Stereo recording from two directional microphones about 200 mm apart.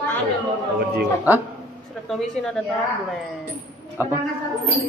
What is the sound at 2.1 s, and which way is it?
Speech, 5° left (ahead or behind).